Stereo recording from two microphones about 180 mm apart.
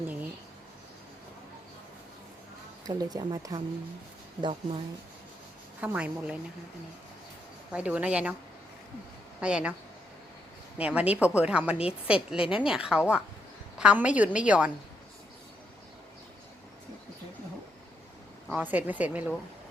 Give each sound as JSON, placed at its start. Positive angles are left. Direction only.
{"t": 2.8, "sound": "speech", "side_deg": -20}
{"t": 5.8, "sound": "speech", "side_deg": -5}
{"t": 7.7, "sound": "speech", "side_deg": -5}
{"t": 9.4, "sound": "speech", "side_deg": -5}
{"t": 10.8, "sound": "a woman's voice", "side_deg": -5}
{"t": 18.5, "sound": "speech", "side_deg": -10}